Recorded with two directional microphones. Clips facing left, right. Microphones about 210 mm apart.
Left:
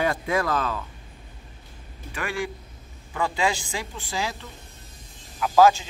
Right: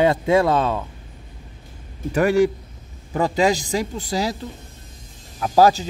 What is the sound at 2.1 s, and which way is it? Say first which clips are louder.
Speech: right 13 dB; 40° right (ahead or behind).